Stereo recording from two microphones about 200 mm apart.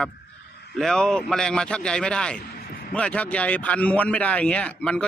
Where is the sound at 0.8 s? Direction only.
5° left (ahead or behind).